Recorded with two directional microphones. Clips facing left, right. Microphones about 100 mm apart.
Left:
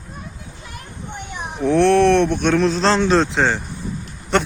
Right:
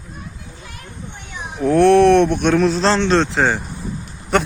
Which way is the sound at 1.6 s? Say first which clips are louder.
Right 3 dB; 10° right (ahead or behind).